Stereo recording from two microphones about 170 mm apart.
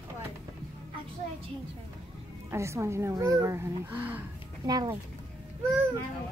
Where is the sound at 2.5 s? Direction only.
15° right (ahead or behind).